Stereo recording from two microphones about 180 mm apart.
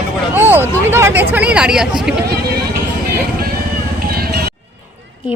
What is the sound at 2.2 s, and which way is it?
Speech, 60° right (ahead or behind).